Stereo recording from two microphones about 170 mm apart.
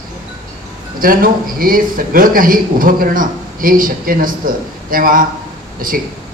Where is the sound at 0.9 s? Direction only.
55° right (ahead or behind).